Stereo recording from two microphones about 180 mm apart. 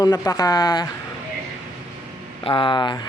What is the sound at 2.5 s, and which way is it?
Speech, 30° left (ahead or behind).